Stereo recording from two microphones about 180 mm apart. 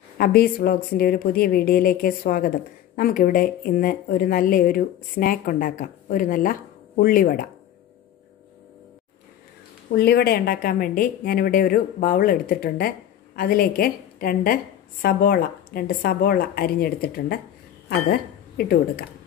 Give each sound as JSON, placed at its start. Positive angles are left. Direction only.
{"t": 0.2, "sound": "a woman's voice", "side_deg": 55}
{"t": 9.9, "sound": "a woman's voice", "side_deg": 60}